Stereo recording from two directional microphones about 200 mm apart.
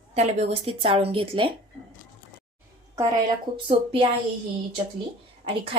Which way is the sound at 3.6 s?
25° right (ahead or behind).